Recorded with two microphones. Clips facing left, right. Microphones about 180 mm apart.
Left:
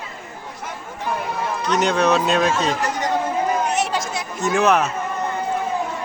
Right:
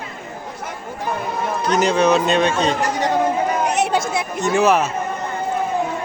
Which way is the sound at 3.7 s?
60° right (ahead or behind).